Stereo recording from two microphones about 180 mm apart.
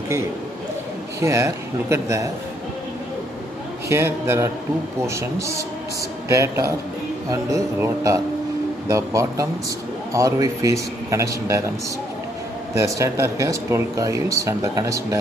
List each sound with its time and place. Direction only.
1.2 s speech: 15° right (ahead or behind)
3.9 s speech: 15° right (ahead or behind)
12.7 s speech: 15° right (ahead or behind)